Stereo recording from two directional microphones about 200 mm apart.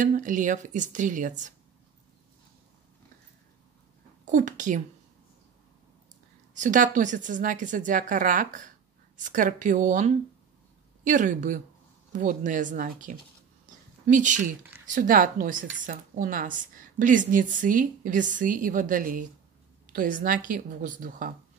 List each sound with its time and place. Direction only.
0.0 s a woman's voice: 40° right (ahead or behind)
4.3 s a woman's voice: 40° right (ahead or behind)
6.5 s a woman's voice: 40° right (ahead or behind)